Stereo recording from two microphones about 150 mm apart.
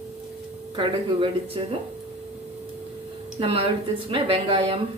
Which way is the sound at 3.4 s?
40° right (ahead or behind).